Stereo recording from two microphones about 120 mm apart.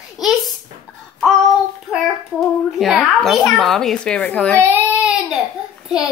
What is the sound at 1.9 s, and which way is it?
A child's voice, centre (ahead or behind).